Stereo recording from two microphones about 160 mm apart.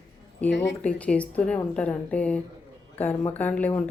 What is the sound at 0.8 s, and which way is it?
Speech, 10° left (ahead or behind).